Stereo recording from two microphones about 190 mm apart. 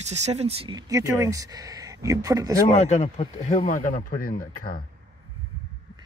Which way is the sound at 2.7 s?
35° left (ahead or behind).